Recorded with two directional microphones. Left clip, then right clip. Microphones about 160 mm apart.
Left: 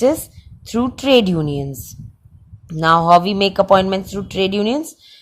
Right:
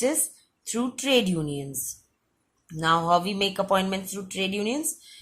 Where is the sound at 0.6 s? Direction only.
45° left (ahead or behind).